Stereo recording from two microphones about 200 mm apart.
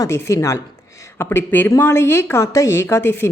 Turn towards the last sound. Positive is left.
turn(degrees=10)  # may be behind; listen again after turning